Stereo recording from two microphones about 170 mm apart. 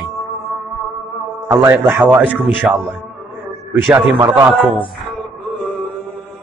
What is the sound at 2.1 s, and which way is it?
Speech, 10° right (ahead or behind).